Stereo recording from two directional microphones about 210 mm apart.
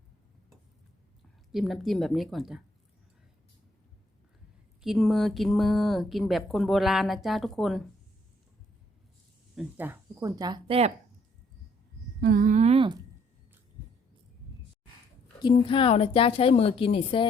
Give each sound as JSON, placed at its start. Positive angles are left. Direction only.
{"t": 1.5, "sound": "speech", "side_deg": 0}
{"t": 4.8, "sound": "speech", "side_deg": 0}
{"t": 9.6, "sound": "speech", "side_deg": -10}
{"t": 12.2, "sound": "a woman's voice", "side_deg": -45}
{"t": 15.4, "sound": "a woman's voice", "side_deg": 25}